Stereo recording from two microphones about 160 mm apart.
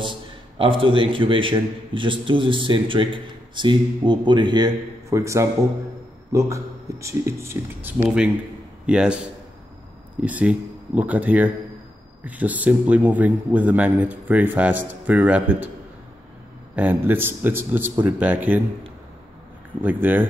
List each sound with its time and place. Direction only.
0.0 s a man's voice: 30° right (ahead or behind); by 9.2 s 5° right (ahead or behind)
10.2 s speech: 10° right (ahead or behind)
16.7 s speech: 10° right (ahead or behind)
19.8 s speech: 10° right (ahead or behind)